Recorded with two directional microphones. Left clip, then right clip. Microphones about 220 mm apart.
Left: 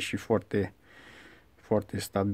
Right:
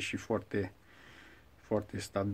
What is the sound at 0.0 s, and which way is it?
Speech, 45° left (ahead or behind).